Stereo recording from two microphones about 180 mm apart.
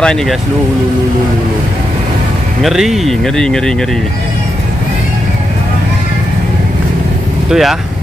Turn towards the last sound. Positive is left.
turn(degrees=0)  # may be behind; listen again after turning